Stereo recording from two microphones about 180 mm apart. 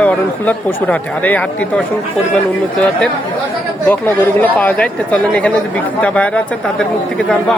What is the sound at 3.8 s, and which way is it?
Speech, 10° left (ahead or behind).